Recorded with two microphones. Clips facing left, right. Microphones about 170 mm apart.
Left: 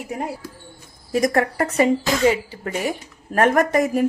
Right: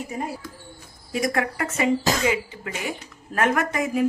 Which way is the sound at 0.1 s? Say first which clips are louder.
Left 3 dB; 75° left (ahead or behind).